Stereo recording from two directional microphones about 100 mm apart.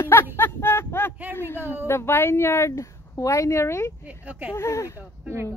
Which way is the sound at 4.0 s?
15° right (ahead or behind).